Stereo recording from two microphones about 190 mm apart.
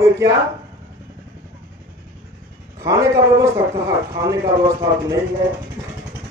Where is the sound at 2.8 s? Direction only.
15° right (ahead or behind).